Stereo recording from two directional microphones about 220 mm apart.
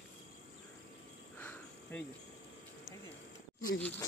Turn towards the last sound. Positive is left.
turn(degrees=5)  # may be behind; listen again after turning